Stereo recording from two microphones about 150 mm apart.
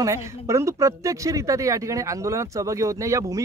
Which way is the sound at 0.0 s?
20° right (ahead or behind).